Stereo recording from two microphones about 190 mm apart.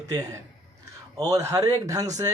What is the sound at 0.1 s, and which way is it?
Speech, 15° right (ahead or behind).